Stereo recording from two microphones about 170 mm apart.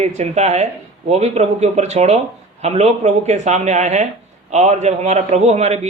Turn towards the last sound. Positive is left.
turn(degrees=-40)  # may be behind; listen again after turning